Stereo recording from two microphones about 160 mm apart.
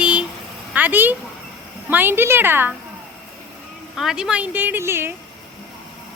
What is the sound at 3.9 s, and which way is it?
Speech, centre (ahead or behind).